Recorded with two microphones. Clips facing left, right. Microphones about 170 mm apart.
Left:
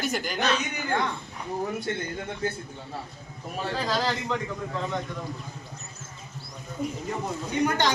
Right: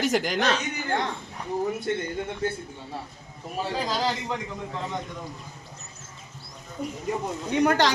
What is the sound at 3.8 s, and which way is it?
Speech, 15° right (ahead or behind).